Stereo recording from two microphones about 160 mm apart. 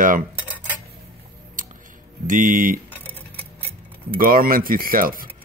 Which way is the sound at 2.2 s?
55° right (ahead or behind).